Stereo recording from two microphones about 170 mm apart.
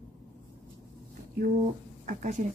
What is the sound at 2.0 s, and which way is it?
Speech, 50° right (ahead or behind).